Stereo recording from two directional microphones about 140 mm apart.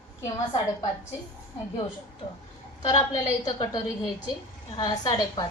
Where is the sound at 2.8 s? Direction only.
50° left (ahead or behind).